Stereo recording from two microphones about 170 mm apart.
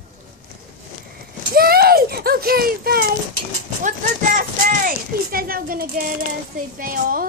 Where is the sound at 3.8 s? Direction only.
55° right (ahead or behind).